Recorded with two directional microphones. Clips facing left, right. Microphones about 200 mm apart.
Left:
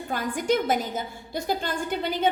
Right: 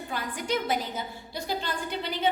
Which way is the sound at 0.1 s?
45° left (ahead or behind).